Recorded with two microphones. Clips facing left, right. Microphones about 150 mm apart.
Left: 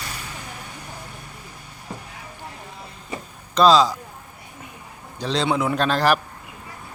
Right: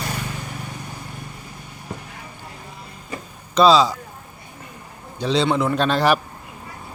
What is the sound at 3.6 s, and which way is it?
Speech, 5° right (ahead or behind).